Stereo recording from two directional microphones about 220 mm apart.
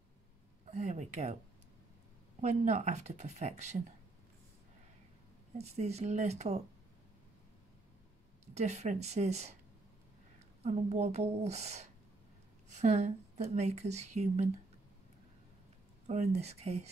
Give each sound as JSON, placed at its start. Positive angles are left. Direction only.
{"t": 0.7, "sound": "a woman's voice", "side_deg": -30}
{"t": 2.4, "sound": "a woman's voice", "side_deg": -30}
{"t": 5.6, "sound": "a woman's voice", "side_deg": -30}
{"t": 8.5, "sound": "a woman's voice", "side_deg": -30}
{"t": 10.6, "sound": "a woman's voice", "side_deg": -30}
{"t": 16.1, "sound": "a woman's voice", "side_deg": -30}